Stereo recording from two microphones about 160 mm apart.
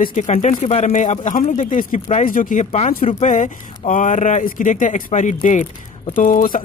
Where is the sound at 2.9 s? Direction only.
55° left (ahead or behind).